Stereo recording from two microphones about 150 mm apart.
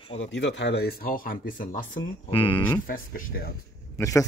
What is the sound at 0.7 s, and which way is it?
Speech, 90° left.